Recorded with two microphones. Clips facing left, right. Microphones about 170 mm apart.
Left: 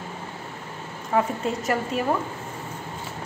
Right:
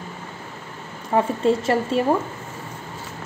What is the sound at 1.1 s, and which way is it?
Speech, 30° right (ahead or behind).